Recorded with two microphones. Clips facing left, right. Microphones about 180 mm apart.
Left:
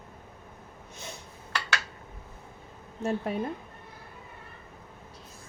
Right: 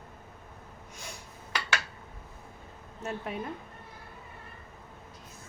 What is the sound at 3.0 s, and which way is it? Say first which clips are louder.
Speech: left 6 dB; 35° left (ahead or behind).